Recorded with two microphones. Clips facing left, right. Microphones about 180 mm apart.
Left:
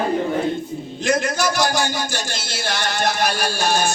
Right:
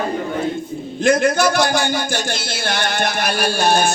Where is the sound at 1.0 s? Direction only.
55° right (ahead or behind).